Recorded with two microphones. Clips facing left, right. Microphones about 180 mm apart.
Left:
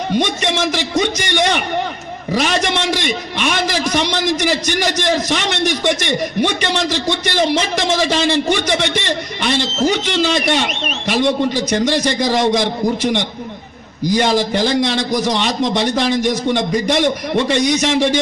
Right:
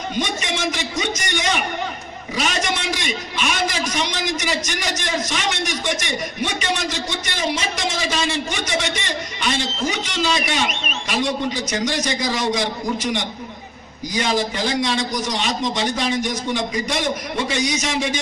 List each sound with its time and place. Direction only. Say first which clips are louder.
0.1 s a man's voice: left 7 dB; 65° left (ahead or behind)